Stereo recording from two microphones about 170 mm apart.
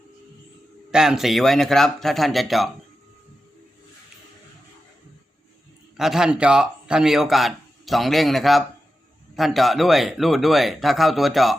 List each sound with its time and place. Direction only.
0.9 s a man's voice: 5° right (ahead or behind)
6.0 s a man's voice: 5° right (ahead or behind)